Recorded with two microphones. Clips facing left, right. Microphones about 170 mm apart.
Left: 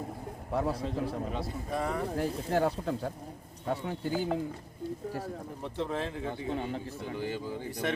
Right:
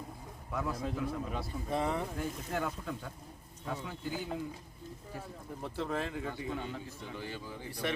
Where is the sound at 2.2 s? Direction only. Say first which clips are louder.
Left 7 dB; 35° left (ahead or behind).